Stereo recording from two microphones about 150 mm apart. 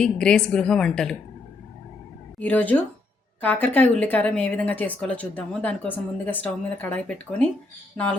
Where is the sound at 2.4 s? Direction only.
10° left (ahead or behind).